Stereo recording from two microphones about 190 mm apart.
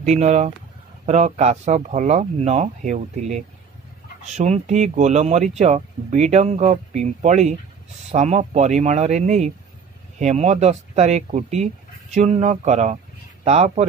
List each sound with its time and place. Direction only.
0.0 s speech: 35° right (ahead or behind)